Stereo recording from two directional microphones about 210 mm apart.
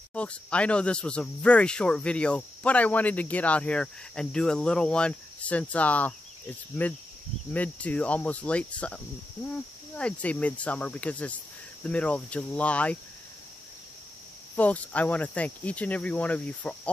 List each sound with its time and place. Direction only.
0.1 s speech: 5° left (ahead or behind)
6.8 s cricket: 10° left (ahead or behind)
11.8 s speech: 5° left (ahead or behind)
14.5 s cricket: 5° left (ahead or behind)